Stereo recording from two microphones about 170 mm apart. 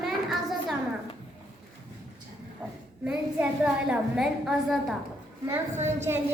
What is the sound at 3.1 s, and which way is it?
A woman's voice, 5° right (ahead or behind).